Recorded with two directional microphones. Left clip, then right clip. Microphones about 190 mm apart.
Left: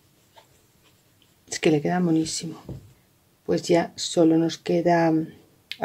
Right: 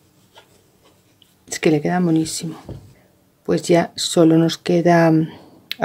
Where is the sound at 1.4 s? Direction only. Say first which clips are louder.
Right 4 dB; 10° right (ahead or behind).